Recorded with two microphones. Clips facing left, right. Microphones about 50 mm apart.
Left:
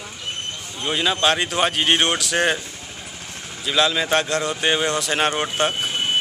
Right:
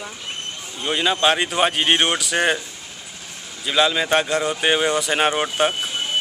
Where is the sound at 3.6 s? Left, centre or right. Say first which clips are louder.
Right 1 dB; centre.